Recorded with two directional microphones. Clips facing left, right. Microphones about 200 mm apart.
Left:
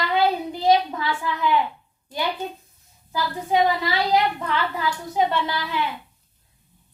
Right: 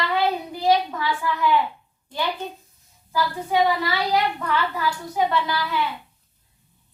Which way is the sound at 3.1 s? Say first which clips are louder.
Even; 20° left (ahead or behind).